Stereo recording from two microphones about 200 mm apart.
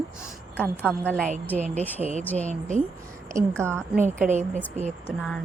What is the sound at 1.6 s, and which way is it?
Speech, 35° right (ahead or behind).